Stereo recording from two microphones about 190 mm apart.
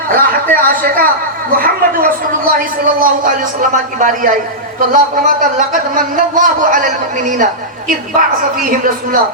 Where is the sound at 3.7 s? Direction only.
45° right (ahead or behind).